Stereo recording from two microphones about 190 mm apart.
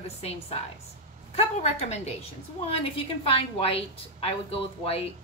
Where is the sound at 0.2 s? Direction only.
35° left (ahead or behind).